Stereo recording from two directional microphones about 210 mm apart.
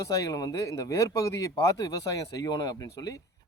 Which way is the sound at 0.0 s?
15° left (ahead or behind).